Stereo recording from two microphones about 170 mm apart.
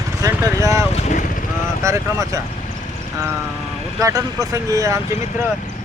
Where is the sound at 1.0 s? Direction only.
45° left (ahead or behind).